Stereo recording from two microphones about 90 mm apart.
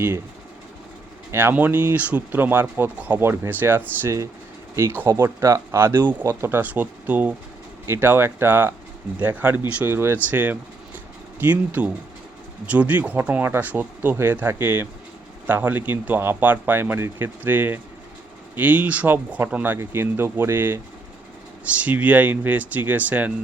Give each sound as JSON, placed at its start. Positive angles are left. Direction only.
{"t": 1.3, "sound": "speech", "side_deg": -25}